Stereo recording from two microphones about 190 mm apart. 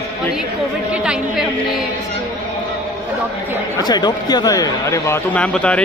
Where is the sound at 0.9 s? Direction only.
5° right (ahead or behind).